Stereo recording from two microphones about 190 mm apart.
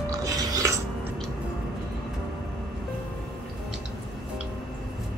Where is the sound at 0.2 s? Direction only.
20° right (ahead or behind).